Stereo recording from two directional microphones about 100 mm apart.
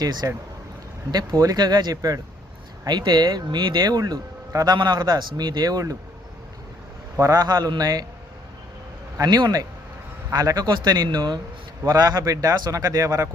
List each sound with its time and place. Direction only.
0.0 s speech: 40° right (ahead or behind)
7.2 s speech: 30° right (ahead or behind)
7.4 s speech: 45° right (ahead or behind)
9.1 s speech: 40° right (ahead or behind)